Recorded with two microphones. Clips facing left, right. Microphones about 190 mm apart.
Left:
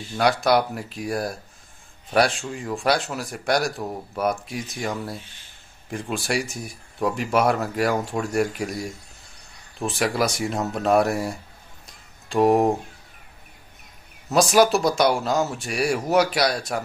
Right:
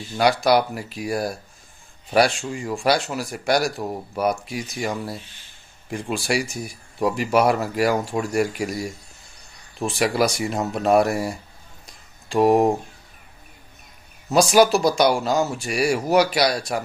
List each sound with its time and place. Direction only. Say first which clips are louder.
0.2 s speech: right 2 dB; centre (ahead or behind)
11.8 s a sound: even; centre (ahead or behind)
14.3 s speech: right 2 dB; centre (ahead or behind)